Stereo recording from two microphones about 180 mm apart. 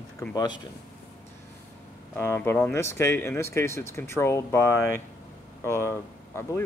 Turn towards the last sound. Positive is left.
turn(degrees=15)  # may be behind; listen again after turning